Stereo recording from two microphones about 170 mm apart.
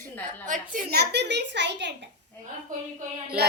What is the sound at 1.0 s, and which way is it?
Speech, 85° right.